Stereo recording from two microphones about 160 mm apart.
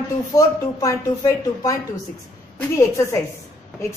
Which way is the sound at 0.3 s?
20° left (ahead or behind).